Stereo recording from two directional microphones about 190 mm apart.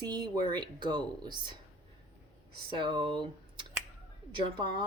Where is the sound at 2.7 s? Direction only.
25° right (ahead or behind).